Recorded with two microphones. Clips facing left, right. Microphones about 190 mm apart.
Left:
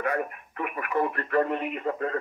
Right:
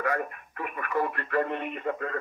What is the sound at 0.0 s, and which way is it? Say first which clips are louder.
Speech: left 1 dB; 25° left (ahead or behind).